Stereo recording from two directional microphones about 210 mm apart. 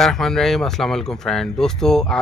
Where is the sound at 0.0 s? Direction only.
Centre (ahead or behind).